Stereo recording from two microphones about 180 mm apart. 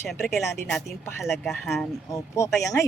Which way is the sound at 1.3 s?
15° left (ahead or behind).